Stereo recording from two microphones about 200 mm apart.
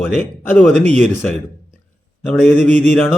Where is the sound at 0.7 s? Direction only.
35° right (ahead or behind).